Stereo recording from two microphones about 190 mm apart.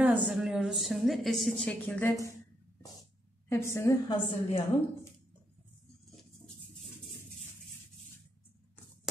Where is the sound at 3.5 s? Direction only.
15° left (ahead or behind).